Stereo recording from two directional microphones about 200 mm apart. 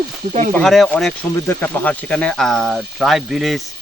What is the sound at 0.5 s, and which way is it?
Speech, centre (ahead or behind).